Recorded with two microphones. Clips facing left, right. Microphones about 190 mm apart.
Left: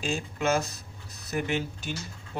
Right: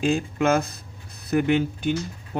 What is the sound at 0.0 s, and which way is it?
Speech, 55° right (ahead or behind).